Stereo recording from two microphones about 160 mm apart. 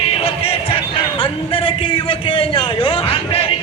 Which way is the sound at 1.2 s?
35° left (ahead or behind).